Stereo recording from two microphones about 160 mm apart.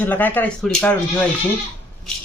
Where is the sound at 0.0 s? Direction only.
10° left (ahead or behind).